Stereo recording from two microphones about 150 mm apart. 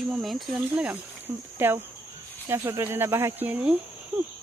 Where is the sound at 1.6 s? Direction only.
15° right (ahead or behind).